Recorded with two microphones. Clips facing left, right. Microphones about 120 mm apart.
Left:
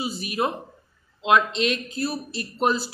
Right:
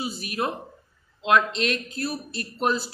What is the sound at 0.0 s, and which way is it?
A man's voice, centre (ahead or behind).